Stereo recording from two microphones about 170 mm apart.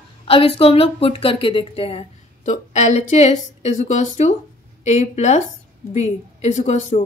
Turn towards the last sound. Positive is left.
turn(degrees=40)  # may be behind; listen again after turning